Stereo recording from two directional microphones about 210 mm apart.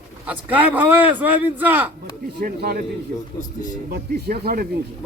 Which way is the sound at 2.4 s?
45° right (ahead or behind).